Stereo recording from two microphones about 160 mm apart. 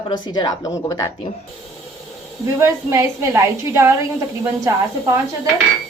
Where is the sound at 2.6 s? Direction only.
15° right (ahead or behind).